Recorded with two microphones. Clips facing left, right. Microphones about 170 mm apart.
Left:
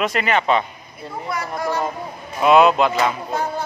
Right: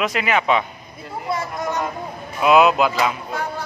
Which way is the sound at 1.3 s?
20° right (ahead or behind).